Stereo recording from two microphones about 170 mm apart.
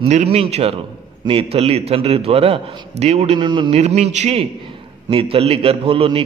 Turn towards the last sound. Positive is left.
turn(degrees=-35)  # may be behind; listen again after turning